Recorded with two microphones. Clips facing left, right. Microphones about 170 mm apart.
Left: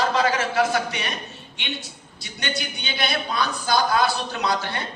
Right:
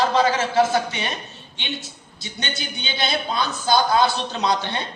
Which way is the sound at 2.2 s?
25° right (ahead or behind).